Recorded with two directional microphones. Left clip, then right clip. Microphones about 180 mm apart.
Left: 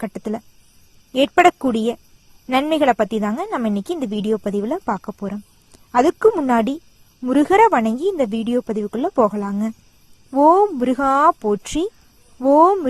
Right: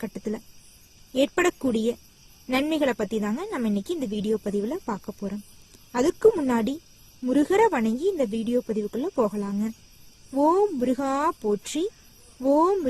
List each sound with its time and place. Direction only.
0.0 s a woman's voice: 25° left (ahead or behind)